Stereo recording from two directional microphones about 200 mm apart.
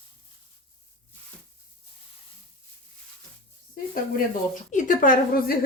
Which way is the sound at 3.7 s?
45° left (ahead or behind).